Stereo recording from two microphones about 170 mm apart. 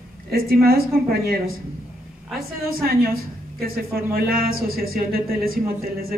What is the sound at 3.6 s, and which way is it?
Speech, 60° right (ahead or behind).